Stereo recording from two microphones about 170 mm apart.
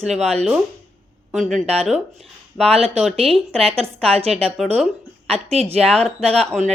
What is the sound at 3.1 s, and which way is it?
Speech, 35° right (ahead or behind).